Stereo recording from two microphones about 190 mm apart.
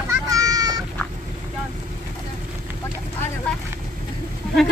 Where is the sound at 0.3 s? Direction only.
20° right (ahead or behind).